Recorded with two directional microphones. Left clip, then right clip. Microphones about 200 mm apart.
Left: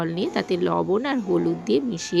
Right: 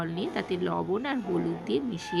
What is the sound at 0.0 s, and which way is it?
Speech, 25° left (ahead or behind).